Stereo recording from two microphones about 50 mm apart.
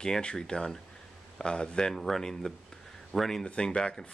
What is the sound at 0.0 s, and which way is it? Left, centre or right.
Speech, centre.